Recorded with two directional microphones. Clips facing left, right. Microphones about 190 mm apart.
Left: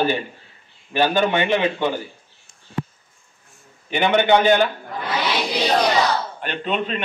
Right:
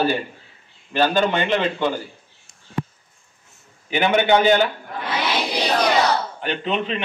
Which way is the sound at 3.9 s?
10° right (ahead or behind).